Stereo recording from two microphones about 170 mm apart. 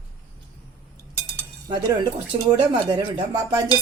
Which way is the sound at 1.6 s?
20° right (ahead or behind).